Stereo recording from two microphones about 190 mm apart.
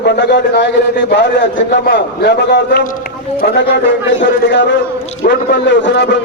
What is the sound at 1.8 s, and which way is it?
A man's voice, 55° left (ahead or behind).